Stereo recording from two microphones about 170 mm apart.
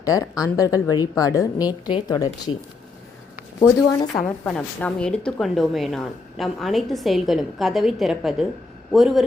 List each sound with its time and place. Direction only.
0.0 s speech: 20° left (ahead or behind)
3.6 s speech: 20° left (ahead or behind)
4.2 s a woman's voice: 5° left (ahead or behind)